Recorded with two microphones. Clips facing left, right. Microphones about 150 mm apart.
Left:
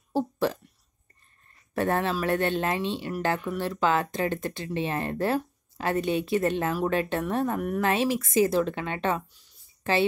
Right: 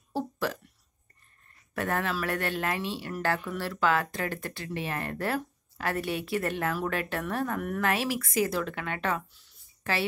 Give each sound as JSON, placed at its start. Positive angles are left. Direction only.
{"t": 0.1, "sound": "speech", "side_deg": 25}
{"t": 1.7, "sound": "speech", "side_deg": 25}